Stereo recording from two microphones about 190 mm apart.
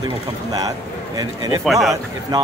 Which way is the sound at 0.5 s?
20° right (ahead or behind).